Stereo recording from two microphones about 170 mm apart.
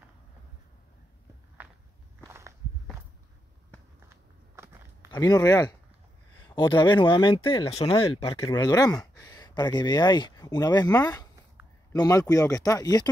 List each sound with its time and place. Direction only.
1.6 s walk: 10° right (ahead or behind)
5.2 s speech: 20° left (ahead or behind)
7.7 s speech: 20° left (ahead or behind)
8.0 s speech: 35° left (ahead or behind)